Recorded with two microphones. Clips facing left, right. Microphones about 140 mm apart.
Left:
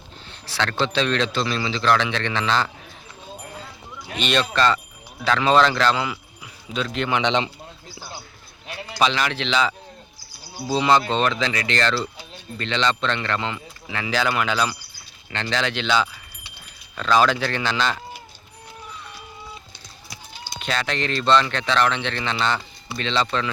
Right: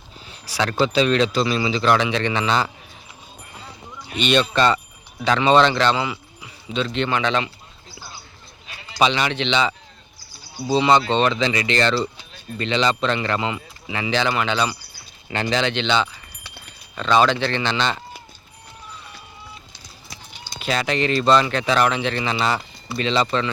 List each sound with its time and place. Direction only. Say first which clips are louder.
0.3 s a man's voice: right 2 dB; 10° right (ahead or behind)
4.2 s a man's voice: right 3 dB; centre (ahead or behind)
7.2 s speech: even; 20° left (ahead or behind)
9.0 s a man's voice: right 2 dB; centre (ahead or behind)
15.3 s speech: right 5 dB; 10° right (ahead or behind)
15.5 s a man's voice: right 1 dB; centre (ahead or behind)
20.6 s a man's voice: right 4 dB; 5° right (ahead or behind)